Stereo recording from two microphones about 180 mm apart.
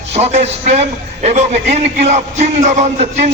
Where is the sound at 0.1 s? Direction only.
35° right (ahead or behind).